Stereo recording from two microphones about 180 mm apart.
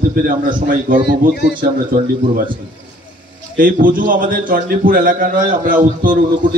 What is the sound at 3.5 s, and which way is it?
A man's voice, 50° right (ahead or behind).